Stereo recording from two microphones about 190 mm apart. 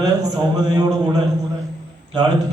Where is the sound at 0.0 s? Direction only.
20° right (ahead or behind).